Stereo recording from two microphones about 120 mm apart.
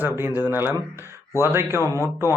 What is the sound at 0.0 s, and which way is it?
Speech, 15° right (ahead or behind).